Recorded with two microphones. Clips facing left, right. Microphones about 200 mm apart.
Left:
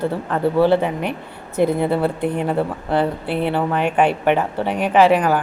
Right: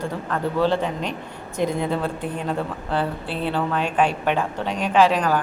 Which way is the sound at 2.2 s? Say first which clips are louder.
Left 7 dB; 65° left (ahead or behind).